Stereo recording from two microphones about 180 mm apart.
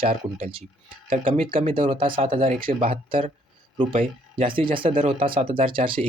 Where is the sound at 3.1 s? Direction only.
30° right (ahead or behind).